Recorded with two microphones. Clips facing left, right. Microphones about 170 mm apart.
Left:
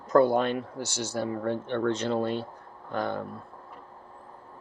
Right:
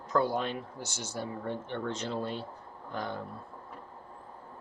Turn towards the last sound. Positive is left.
turn(degrees=65)  # may be behind; listen again after turning